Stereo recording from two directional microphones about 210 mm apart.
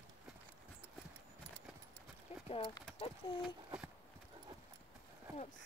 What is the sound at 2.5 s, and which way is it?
Speech, 25° left (ahead or behind).